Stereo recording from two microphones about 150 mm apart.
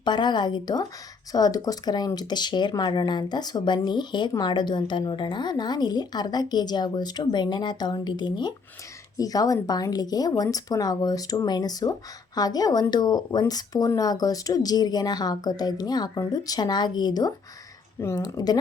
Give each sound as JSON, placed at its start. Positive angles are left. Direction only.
{"t": 0.0, "sound": "speech", "side_deg": 30}